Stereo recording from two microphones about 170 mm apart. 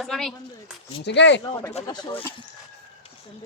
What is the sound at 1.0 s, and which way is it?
Speech, 90° left.